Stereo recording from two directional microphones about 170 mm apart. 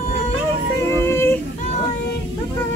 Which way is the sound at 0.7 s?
15° left (ahead or behind).